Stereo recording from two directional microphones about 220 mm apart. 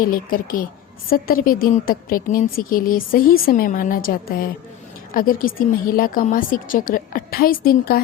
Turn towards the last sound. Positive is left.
turn(degrees=40)  # may be behind; listen again after turning